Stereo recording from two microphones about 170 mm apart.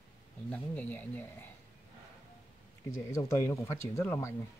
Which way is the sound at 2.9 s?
15° left (ahead or behind).